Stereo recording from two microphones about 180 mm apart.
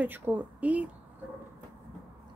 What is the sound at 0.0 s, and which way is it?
Speech, 10° right (ahead or behind).